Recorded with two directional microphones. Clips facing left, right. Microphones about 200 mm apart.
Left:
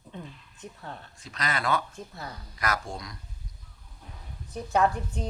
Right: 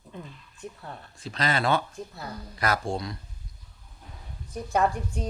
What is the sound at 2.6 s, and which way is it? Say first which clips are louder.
Speech: right 4 dB; 30° right (ahead or behind).